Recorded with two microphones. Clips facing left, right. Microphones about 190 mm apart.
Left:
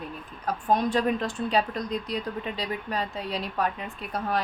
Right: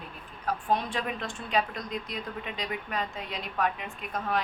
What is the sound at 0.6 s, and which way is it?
A woman's voice, 40° left (ahead or behind).